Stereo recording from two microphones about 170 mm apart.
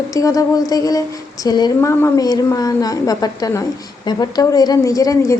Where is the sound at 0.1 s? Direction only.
20° left (ahead or behind).